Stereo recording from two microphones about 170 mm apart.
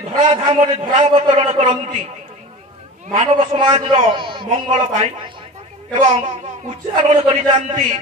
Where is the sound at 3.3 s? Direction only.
25° right (ahead or behind).